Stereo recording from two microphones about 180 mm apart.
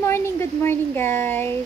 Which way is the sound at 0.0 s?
15° left (ahead or behind).